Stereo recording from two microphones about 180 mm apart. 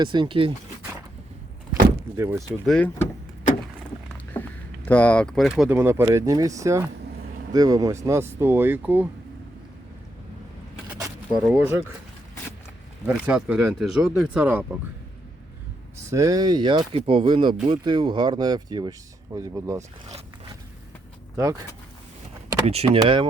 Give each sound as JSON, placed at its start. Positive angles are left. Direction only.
{"t": 0.0, "sound": "speech", "side_deg": -25}
{"t": 2.1, "sound": "speech", "side_deg": -15}
{"t": 2.6, "sound": "speech", "side_deg": 5}
{"t": 4.9, "sound": "speech", "side_deg": 10}
{"t": 5.7, "sound": "speech", "side_deg": -15}
{"t": 10.8, "sound": "vehicle", "side_deg": -15}
{"t": 11.4, "sound": "speech", "side_deg": -10}
{"t": 13.1, "sound": "speech", "side_deg": -5}
{"t": 16.0, "sound": "speech", "side_deg": -15}
{"t": 22.6, "sound": "speech", "side_deg": -35}